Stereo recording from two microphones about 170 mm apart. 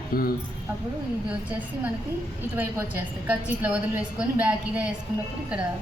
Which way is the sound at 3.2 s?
10° right (ahead or behind).